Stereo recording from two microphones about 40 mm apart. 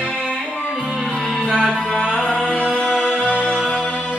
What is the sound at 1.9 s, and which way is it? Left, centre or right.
Music, left.